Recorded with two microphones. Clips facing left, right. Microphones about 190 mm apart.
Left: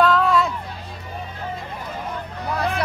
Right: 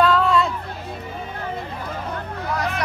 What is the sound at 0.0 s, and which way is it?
Hubbub, centre (ahead or behind).